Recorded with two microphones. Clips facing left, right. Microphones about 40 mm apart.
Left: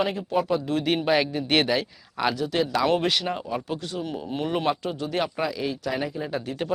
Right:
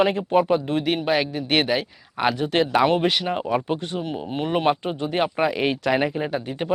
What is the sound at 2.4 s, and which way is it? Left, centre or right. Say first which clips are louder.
Speech: right 5 dB; right.